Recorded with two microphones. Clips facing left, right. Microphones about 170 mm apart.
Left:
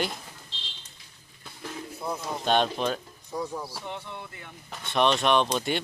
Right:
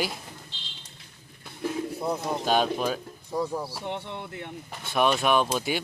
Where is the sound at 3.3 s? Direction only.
30° right (ahead or behind).